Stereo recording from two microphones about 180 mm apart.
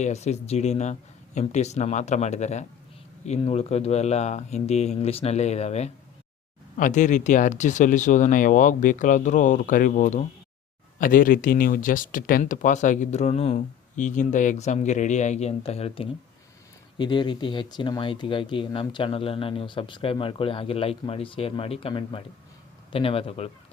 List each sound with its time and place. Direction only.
0.0 s speech: 40° left (ahead or behind)